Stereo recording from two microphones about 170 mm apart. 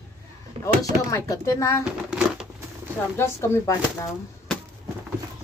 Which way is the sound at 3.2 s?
15° left (ahead or behind).